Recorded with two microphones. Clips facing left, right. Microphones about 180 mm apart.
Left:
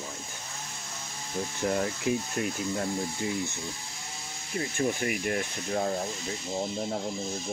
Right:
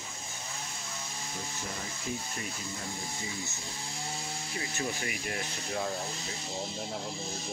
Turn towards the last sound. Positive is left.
turn(degrees=45)  # may be behind; listen again after turning